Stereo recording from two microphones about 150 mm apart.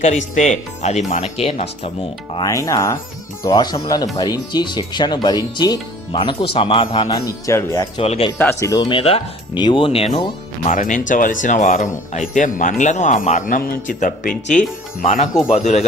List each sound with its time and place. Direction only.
0.0 s speech: 55° left (ahead or behind)
2.3 s speech: 25° left (ahead or behind)
7.1 s speech: 20° left (ahead or behind)
7.9 s speech: 40° left (ahead or behind)
8.3 s speech: 15° left (ahead or behind)
8.9 s speech: 40° left (ahead or behind)
10.7 s a man's voice: 60° left (ahead or behind)